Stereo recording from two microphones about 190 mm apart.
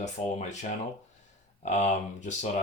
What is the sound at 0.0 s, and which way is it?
Speech, 40° left (ahead or behind).